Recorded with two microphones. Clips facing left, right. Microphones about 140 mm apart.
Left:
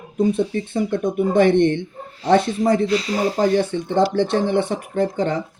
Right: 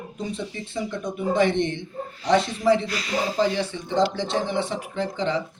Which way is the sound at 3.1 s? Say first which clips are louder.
Left 3 dB; 50° left (ahead or behind).